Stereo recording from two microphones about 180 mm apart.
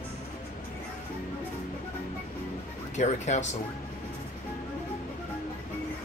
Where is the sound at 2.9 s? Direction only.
40° left (ahead or behind).